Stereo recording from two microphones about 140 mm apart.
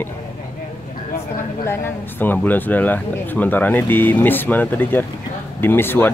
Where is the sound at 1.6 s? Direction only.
15° left (ahead or behind).